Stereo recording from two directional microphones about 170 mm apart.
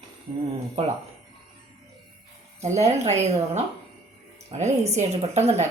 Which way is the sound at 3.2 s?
40° right (ahead or behind).